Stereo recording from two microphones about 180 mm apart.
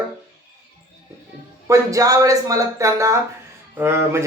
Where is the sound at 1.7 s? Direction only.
20° right (ahead or behind).